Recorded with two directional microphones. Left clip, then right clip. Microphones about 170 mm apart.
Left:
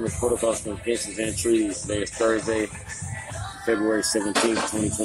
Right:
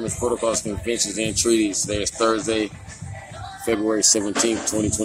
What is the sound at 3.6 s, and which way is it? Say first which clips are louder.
Speech: right 3 dB; 20° right (ahead or behind).